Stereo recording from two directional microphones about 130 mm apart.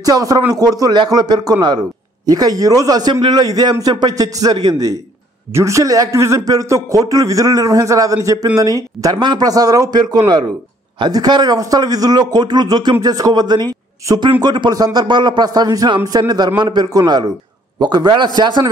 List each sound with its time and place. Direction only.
0.0 s a man's voice: 30° right (ahead or behind)